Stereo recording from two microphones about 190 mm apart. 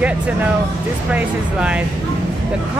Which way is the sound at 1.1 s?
5° right (ahead or behind).